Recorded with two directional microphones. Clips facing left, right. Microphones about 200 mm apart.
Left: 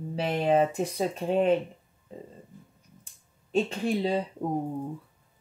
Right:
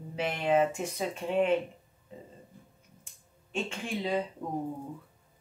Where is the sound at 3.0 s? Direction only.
35° left (ahead or behind).